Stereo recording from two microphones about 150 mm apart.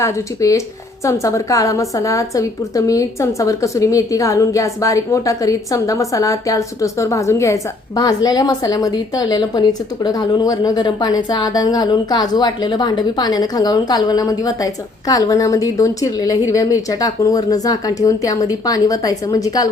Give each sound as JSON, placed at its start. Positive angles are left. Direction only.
{"t": 0.0, "sound": "a woman's voice", "side_deg": 20}